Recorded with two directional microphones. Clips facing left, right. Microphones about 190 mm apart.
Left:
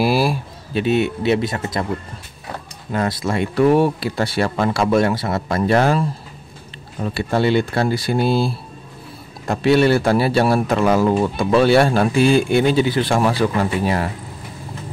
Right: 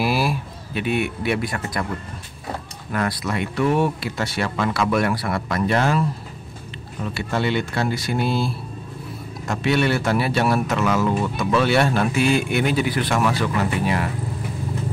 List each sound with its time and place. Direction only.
0.0 s speech: 30° left (ahead or behind)
2.9 s a man's voice: 25° left (ahead or behind)